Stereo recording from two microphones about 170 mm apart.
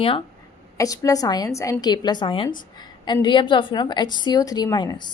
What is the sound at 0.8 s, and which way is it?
A woman's voice, 20° left (ahead or behind).